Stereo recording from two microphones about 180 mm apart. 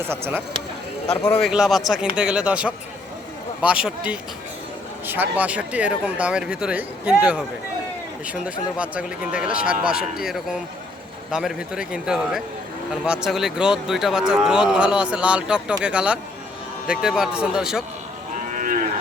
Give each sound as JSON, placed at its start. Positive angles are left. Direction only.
{"t": 0.0, "sound": "speech", "side_deg": -10}
{"t": 1.2, "sound": "a man's voice", "side_deg": 10}
{"t": 1.5, "sound": "a man's voice", "side_deg": 0}
{"t": 18.5, "sound": "cattle", "side_deg": -50}